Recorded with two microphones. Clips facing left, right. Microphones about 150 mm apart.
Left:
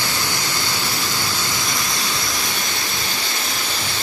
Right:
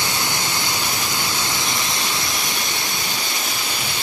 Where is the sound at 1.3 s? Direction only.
20° right (ahead or behind).